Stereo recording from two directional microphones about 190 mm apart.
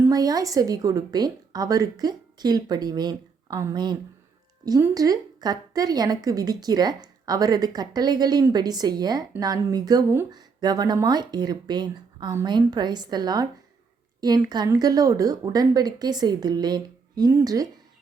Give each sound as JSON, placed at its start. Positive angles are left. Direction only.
{"t": 0.0, "sound": "a woman's voice", "side_deg": -20}